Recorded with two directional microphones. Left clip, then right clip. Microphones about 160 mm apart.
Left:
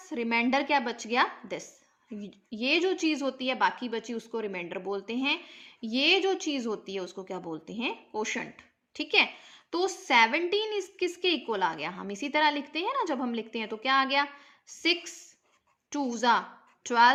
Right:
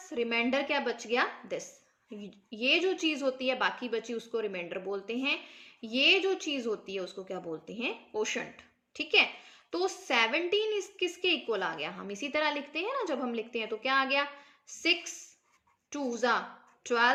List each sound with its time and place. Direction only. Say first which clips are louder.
0.0 s speech: left 2 dB; 50° left (ahead or behind)